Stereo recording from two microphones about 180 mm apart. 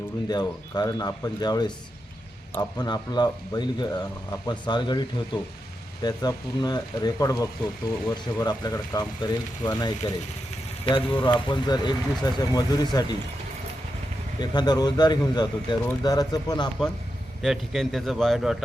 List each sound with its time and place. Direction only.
0.3 s speech: 20° left (ahead or behind)
14.3 s speech: 25° left (ahead or behind)
17.4 s a man's voice: centre (ahead or behind)